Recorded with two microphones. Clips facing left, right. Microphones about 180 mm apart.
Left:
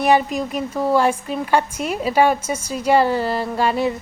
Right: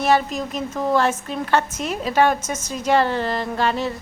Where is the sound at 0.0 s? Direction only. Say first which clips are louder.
Left 2 dB; 10° left (ahead or behind).